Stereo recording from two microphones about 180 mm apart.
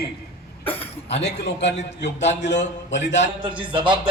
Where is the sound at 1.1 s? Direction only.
70° left (ahead or behind).